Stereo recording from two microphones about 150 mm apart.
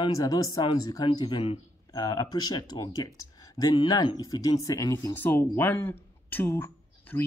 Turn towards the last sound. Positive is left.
turn(degrees=15)  # may be behind; listen again after turning